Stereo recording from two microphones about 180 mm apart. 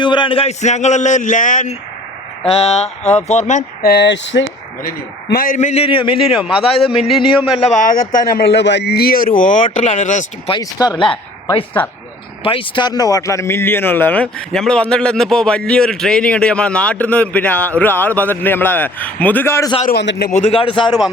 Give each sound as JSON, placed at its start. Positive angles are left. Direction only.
{"t": 0.0, "sound": "a man's voice", "side_deg": 25}
{"t": 2.5, "sound": "a man's voice", "side_deg": 35}
{"t": 3.8, "sound": "a sound", "side_deg": 70}
{"t": 4.8, "sound": "a man's voice", "side_deg": 50}
{"t": 7.7, "sound": "a man's voice", "side_deg": 45}
{"t": 10.5, "sound": "speech", "side_deg": 20}
{"t": 19.8, "sound": "a man's voice", "side_deg": 65}
{"t": 20.5, "sound": "speech", "side_deg": 30}